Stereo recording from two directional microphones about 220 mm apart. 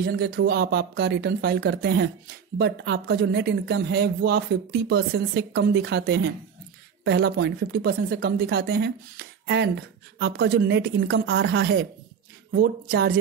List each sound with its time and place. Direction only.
0.0 s speech: 45° right (ahead or behind)